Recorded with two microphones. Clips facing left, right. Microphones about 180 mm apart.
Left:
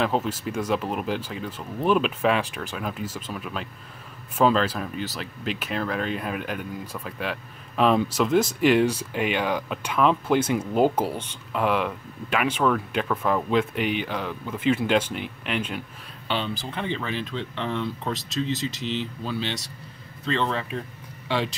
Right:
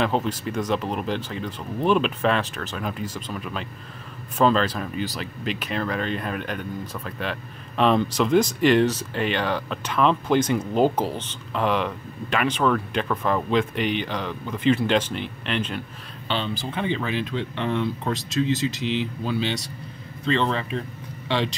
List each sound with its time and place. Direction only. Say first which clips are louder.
0.0 s speech: right 1 dB; 5° left (ahead or behind)